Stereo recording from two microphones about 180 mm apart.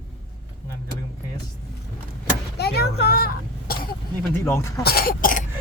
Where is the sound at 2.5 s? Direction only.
65° left (ahead or behind).